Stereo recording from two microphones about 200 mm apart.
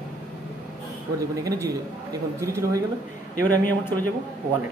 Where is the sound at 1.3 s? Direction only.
15° right (ahead or behind).